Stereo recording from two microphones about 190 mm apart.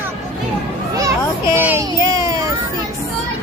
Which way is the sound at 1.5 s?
10° right (ahead or behind).